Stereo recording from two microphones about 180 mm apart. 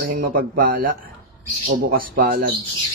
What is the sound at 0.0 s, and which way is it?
A man's voice, 50° right (ahead or behind).